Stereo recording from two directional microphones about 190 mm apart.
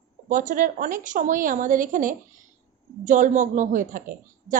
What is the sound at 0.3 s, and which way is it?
A woman's voice, 45° right (ahead or behind).